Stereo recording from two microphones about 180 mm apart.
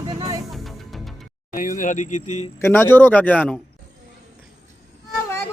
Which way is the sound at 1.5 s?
45° left (ahead or behind).